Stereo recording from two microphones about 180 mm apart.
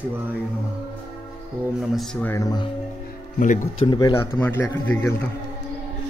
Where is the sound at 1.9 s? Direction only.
5° left (ahead or behind).